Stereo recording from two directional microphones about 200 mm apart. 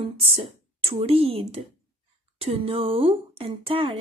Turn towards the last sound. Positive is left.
turn(degrees=-25)  # may be behind; listen again after turning